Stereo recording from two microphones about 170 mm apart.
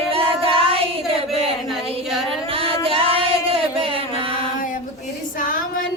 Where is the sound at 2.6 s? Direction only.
35° right (ahead or behind).